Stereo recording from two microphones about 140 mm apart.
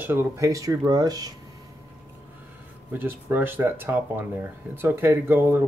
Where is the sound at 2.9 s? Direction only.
15° right (ahead or behind).